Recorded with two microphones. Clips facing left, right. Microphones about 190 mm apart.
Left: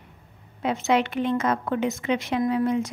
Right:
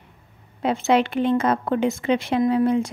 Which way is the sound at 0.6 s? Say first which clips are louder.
Right 3 dB; 30° right (ahead or behind).